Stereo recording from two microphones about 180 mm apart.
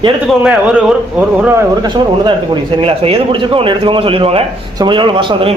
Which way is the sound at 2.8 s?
30° right (ahead or behind).